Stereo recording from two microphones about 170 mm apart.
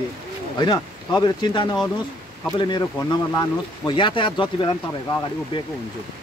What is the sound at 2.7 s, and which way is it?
Speech, 25° left (ahead or behind).